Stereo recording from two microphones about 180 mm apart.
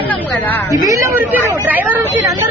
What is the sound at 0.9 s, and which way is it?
Speech, 15° right (ahead or behind).